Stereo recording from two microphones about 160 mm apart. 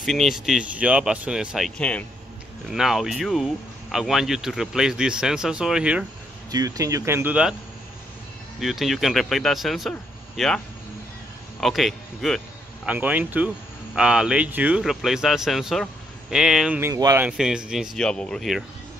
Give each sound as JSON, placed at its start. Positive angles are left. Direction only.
{"t": 0.0, "sound": "speech", "side_deg": 0}
{"t": 1.8, "sound": "a man's voice", "side_deg": 5}
{"t": 6.5, "sound": "speech", "side_deg": -20}
{"t": 8.5, "sound": "speech", "side_deg": 0}
{"t": 11.6, "sound": "speech", "side_deg": 0}
{"t": 12.8, "sound": "speech", "side_deg": -10}
{"t": 16.9, "sound": "speech", "side_deg": -20}
{"t": 17.2, "sound": "speech", "side_deg": -5}